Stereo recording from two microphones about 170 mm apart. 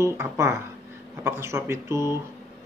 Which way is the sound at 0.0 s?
15° right (ahead or behind).